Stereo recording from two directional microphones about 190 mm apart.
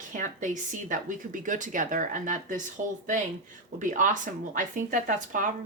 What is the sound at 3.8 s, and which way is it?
A woman's voice, 40° right (ahead or behind).